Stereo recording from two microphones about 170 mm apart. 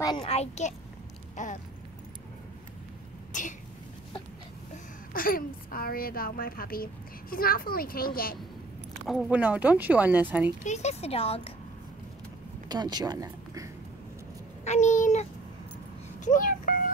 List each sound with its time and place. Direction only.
0.2 s speech: 40° left (ahead or behind)
1.3 s a sound: 45° left (ahead or behind)
3.3 s a sound: 50° left (ahead or behind)
5.1 s a woman's voice: 55° left (ahead or behind)
9.0 s speech: 5° right (ahead or behind)
10.6 s speech: 40° left (ahead or behind)
12.6 s speech: 25° right (ahead or behind)
14.6 s a child's voice: 45° left (ahead or behind)
16.3 s a sound: 50° left (ahead or behind)